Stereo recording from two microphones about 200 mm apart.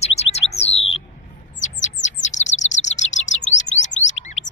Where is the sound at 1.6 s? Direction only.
35° left (ahead or behind).